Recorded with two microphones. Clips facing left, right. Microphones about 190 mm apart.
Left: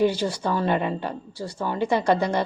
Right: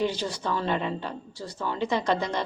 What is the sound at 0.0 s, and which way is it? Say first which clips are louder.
Speech: left 6 dB; 10° left (ahead or behind).